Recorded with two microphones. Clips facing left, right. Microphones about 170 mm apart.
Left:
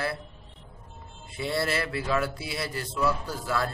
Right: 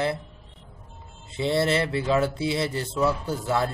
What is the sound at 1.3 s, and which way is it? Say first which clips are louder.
Speech: right 6 dB; 25° right (ahead or behind).